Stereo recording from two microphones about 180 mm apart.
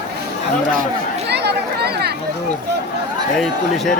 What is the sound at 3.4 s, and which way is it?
Speech, centre (ahead or behind).